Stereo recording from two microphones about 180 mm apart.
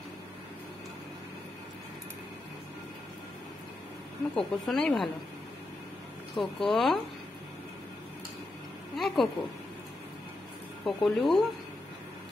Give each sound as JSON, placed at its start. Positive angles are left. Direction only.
{"t": 4.4, "sound": "speech", "side_deg": 0}
{"t": 6.3, "sound": "speech", "side_deg": 0}
{"t": 8.9, "sound": "speech", "side_deg": 0}
{"t": 10.9, "sound": "speech", "side_deg": 0}